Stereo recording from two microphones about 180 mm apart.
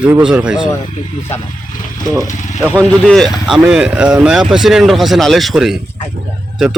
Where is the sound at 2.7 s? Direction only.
5° left (ahead or behind).